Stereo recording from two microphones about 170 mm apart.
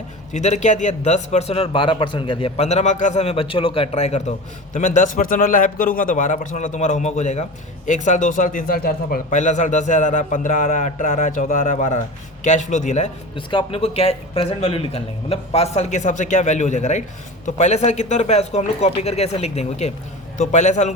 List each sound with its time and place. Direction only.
0.3 s a man's voice: 45° left (ahead or behind)
13.3 s a man's voice: 30° left (ahead or behind)